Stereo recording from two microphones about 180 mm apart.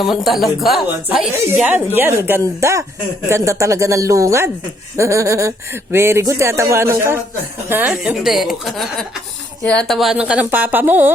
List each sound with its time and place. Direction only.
0.1 s a woman's voice: centre (ahead or behind)